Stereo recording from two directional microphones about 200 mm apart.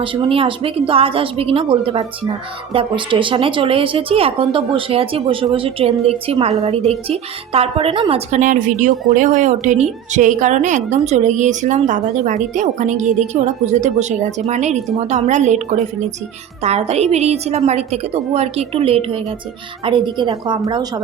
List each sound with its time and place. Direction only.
0.0 s a woman's voice: 25° right (ahead or behind)